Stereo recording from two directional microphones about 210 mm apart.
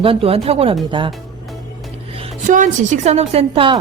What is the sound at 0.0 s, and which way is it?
A woman's voice, 25° right (ahead or behind).